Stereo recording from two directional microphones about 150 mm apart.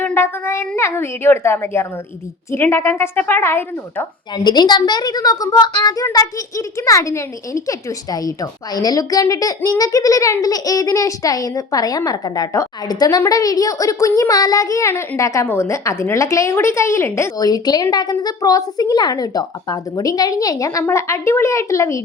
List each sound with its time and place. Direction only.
0.0 s a sound: 15° left (ahead or behind)
0.8 s a woman's voice: 15° left (ahead or behind)
4.4 s a child's voice: 30° left (ahead or behind)